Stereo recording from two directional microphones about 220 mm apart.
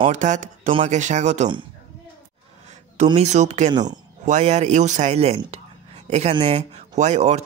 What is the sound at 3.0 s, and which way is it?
Speech, 30° right (ahead or behind).